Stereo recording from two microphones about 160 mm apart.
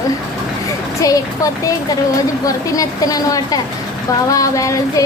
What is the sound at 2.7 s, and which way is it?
A child's voice, 20° left (ahead or behind).